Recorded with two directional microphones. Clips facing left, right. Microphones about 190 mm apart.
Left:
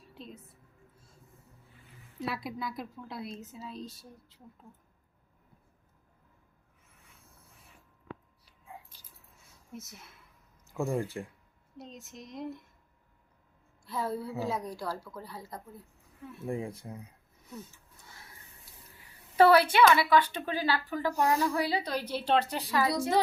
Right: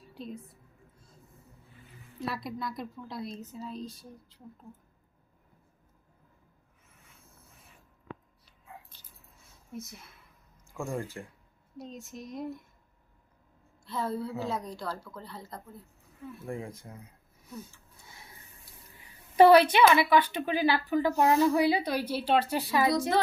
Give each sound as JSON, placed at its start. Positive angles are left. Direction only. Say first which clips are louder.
{"t": 0.1, "sound": "a sound", "louder": "right 6 dB", "side_deg": 0}
{"t": 2.2, "sound": "a woman's voice", "louder": "right 1 dB", "side_deg": 5}
{"t": 9.7, "sound": "a woman's voice", "louder": "right 4 dB", "side_deg": 0}
{"t": 10.8, "sound": "speech", "louder": "left 4 dB", "side_deg": 15}
{"t": 11.8, "sound": "a woman's voice", "louder": "right 4 dB", "side_deg": 0}
{"t": 13.8, "sound": "a woman's voice", "louder": "right 1 dB", "side_deg": 10}
{"t": 19.4, "sound": "a woman's voice", "louder": "right 3 dB", "side_deg": -20}
{"t": 22.9, "sound": "a woman's voice", "louder": "even", "side_deg": 15}